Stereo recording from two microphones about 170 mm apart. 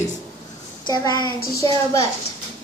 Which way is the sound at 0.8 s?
25° left (ahead or behind).